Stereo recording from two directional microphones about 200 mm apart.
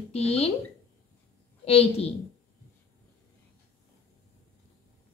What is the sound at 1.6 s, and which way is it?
Speech, 30° left (ahead or behind).